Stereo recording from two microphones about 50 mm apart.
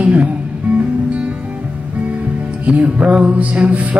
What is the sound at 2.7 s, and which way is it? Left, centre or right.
Music, right.